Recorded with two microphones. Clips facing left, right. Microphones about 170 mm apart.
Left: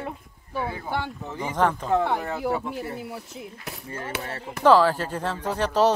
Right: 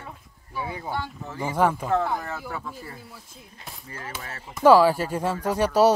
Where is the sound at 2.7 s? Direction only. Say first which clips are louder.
Left 9 dB; 70° left (ahead or behind).